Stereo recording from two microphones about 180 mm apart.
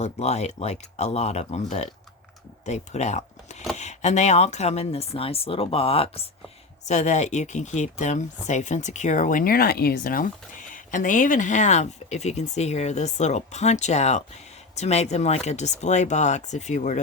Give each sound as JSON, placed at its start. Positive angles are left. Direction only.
{"t": 0.0, "sound": "speech", "side_deg": 35}
{"t": 2.6, "sound": "speech", "side_deg": 40}